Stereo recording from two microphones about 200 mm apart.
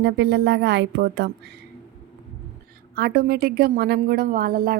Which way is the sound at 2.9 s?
50° right (ahead or behind).